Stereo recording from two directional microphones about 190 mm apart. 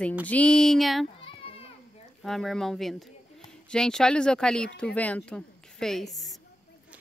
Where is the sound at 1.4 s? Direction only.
30° left (ahead or behind).